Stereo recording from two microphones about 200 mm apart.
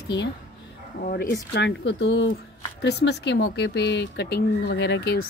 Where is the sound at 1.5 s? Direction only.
60° left (ahead or behind).